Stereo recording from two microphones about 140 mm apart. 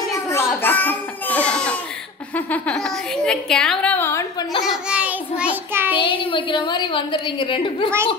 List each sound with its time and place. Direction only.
0.1 s a sound: 20° left (ahead or behind)
4.6 s child singing: 5° right (ahead or behind)
5.9 s a woman's voice: 35° left (ahead or behind)